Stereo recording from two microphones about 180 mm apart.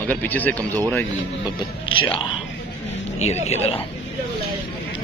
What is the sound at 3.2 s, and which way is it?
Speech, 35° left (ahead or behind).